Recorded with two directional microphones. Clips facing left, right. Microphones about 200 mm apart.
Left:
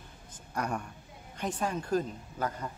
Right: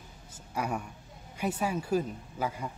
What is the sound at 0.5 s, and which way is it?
A woman's voice, 5° right (ahead or behind).